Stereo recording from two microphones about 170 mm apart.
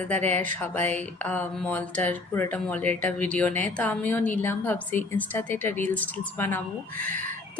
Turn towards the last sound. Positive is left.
turn(degrees=-55)  # may be behind; listen again after turning